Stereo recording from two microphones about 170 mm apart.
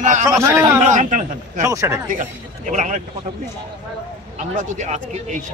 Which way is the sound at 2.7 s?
45° right (ahead or behind).